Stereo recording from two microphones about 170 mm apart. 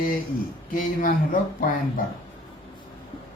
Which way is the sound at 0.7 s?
55° left (ahead or behind).